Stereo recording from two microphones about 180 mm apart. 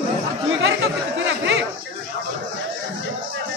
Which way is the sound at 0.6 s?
90° right.